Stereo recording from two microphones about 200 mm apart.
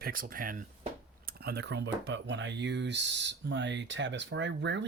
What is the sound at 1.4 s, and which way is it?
Speech, 55° right (ahead or behind).